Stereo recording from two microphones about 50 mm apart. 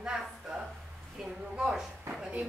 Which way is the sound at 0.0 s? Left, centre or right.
Centre.